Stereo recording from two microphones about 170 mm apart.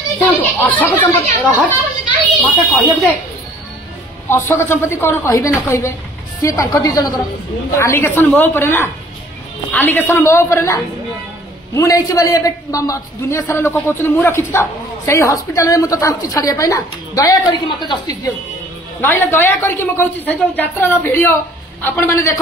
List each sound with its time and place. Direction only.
0.2 s a woman's voice: 10° left (ahead or behind)
2.4 s speech: centre (ahead or behind)
4.3 s a woman's voice: 15° left (ahead or behind)
18.9 s a woman's voice: 10° left (ahead or behind)